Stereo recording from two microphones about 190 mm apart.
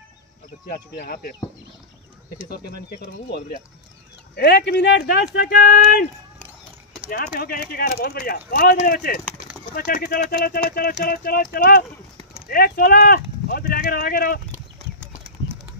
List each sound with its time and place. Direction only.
0.7 s speech: 55° left (ahead or behind)
2.5 s speech: 60° left (ahead or behind)
4.4 s speech: 60° left (ahead or behind)
7.1 s speech: 50° left (ahead or behind)